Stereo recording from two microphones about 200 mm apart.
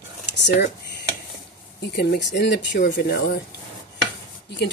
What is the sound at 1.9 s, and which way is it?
Speech, 60° left (ahead or behind).